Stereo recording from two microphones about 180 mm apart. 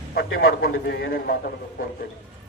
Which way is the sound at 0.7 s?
70° left (ahead or behind).